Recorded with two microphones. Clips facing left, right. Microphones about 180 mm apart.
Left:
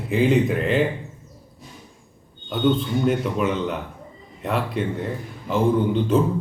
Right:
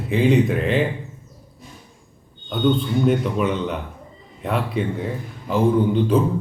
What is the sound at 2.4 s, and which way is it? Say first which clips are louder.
A man's voice: right 1 dB; 5° left (ahead or behind).